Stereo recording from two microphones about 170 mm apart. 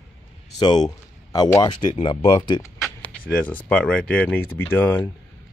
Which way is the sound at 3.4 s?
10° left (ahead or behind).